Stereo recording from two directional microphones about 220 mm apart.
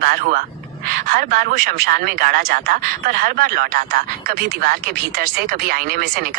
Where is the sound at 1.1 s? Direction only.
40° right (ahead or behind).